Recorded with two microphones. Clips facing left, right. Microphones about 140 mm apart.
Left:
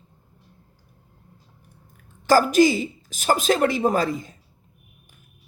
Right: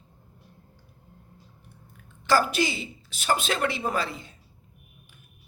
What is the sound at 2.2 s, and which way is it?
A woman's voice, 40° left (ahead or behind).